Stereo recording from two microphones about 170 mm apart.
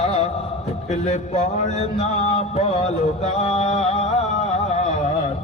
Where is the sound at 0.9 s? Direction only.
45° left (ahead or behind).